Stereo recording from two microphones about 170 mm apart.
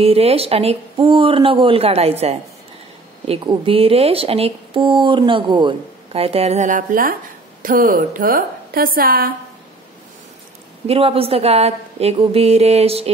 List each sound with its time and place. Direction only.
0.0 s a woman's voice: 35° right (ahead or behind); by 9.3 s 60° right (ahead or behind)
10.9 s speech: 35° right (ahead or behind)